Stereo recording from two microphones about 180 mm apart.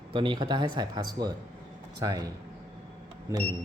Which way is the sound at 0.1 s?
25° right (ahead or behind).